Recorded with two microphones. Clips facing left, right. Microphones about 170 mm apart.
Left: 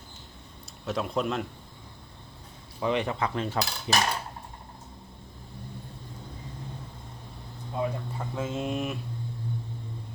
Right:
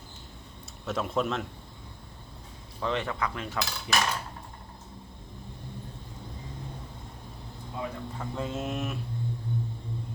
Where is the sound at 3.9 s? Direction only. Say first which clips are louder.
Left 2 dB; 25° left (ahead or behind).